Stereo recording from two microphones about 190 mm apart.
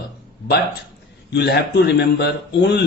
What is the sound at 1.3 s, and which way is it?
A man's voice, 60° left (ahead or behind).